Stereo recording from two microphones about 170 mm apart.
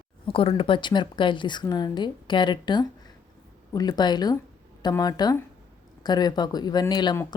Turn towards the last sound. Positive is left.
turn(degrees=25)  # may be behind; listen again after turning